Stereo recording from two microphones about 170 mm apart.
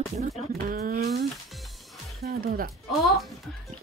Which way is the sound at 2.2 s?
60° right (ahead or behind).